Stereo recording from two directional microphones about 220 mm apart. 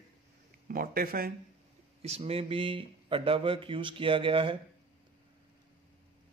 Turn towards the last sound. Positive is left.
turn(degrees=-25)  # may be behind; listen again after turning